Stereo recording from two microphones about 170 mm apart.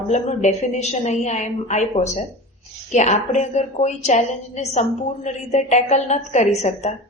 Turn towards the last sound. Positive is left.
turn(degrees=40)  # may be behind; listen again after turning